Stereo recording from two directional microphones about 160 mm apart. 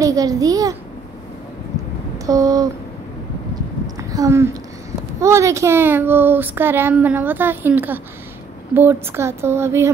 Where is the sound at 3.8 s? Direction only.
20° right (ahead or behind).